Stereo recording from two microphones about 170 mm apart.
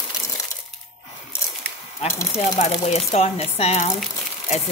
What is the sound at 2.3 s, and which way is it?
Speech, 40° left (ahead or behind).